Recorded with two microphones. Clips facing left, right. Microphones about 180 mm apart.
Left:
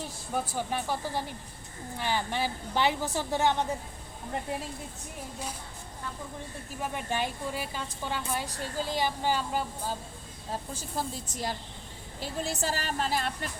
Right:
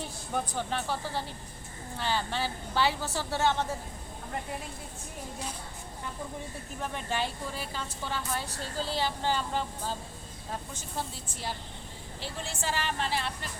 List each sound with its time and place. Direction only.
0.3 s a woman's voice: 10° left (ahead or behind)
6.7 s a woman's voice: 10° left (ahead or behind)
10.5 s a woman's voice: 35° left (ahead or behind)